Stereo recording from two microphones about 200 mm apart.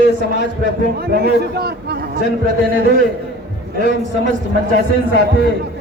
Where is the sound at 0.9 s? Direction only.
50° right (ahead or behind).